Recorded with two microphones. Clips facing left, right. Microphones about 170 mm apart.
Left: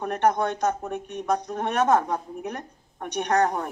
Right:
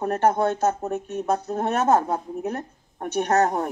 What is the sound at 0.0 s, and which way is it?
Speech, 40° right (ahead or behind).